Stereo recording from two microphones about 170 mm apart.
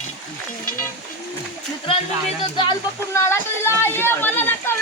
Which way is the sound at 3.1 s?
15° left (ahead or behind).